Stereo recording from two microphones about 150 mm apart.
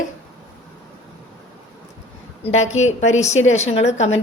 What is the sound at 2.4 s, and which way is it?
A woman's voice, 45° left (ahead or behind).